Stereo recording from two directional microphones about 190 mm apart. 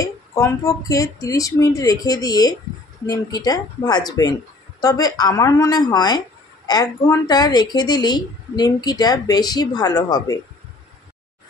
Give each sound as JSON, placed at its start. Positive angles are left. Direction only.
{"t": 0.0, "sound": "speech", "side_deg": 15}